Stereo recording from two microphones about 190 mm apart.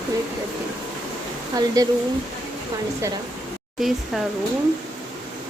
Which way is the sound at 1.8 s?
20° right (ahead or behind).